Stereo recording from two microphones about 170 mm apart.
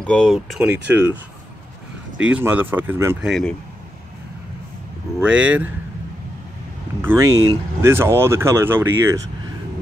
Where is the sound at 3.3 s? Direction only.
5° left (ahead or behind).